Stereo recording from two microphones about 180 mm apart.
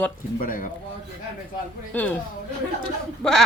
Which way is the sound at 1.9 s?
10° left (ahead or behind).